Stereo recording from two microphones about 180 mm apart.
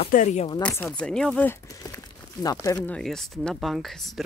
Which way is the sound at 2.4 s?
20° left (ahead or behind).